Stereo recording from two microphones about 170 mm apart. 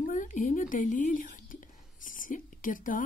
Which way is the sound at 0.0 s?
50° left (ahead or behind).